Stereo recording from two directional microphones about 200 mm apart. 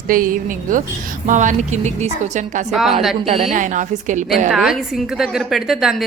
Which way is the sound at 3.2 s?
30° right (ahead or behind).